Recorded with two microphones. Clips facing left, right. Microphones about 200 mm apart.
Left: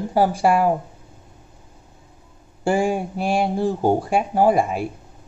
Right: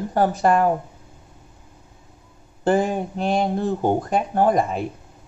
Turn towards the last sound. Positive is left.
turn(degrees=10)  # may be behind; listen again after turning